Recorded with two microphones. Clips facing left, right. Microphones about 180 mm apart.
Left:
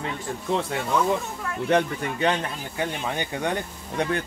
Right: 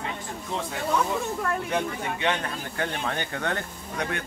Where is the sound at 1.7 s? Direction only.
70° left (ahead or behind).